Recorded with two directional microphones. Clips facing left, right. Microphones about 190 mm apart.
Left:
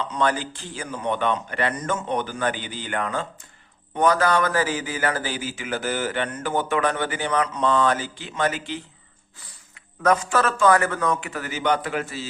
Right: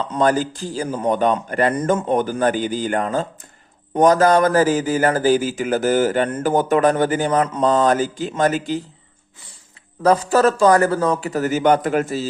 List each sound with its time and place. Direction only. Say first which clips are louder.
0.1 s a man's voice: right 8 dB; 40° right (ahead or behind)
10.0 s a man's voice: right 6 dB; 35° right (ahead or behind)